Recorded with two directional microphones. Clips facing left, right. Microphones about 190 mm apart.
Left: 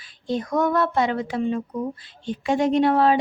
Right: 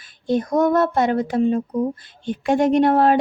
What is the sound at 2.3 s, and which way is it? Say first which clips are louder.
Speech: right 3 dB; 55° right (ahead or behind).